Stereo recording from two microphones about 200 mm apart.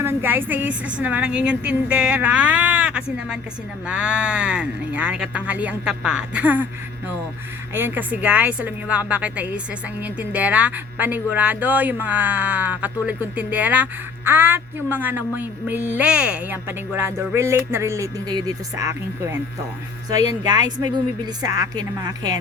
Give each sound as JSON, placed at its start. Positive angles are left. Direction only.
{"t": 0.0, "sound": "speech", "side_deg": -10}
{"t": 7.7, "sound": "a woman's voice", "side_deg": -10}